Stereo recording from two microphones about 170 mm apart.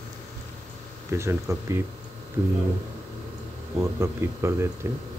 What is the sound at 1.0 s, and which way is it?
Speech, 15° right (ahead or behind).